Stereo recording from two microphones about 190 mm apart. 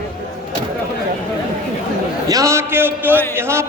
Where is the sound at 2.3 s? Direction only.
15° right (ahead or behind).